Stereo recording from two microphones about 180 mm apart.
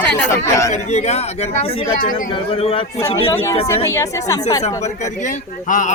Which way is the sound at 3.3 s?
15° left (ahead or behind).